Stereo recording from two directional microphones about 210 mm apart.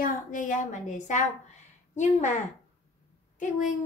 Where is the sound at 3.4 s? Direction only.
35° left (ahead or behind).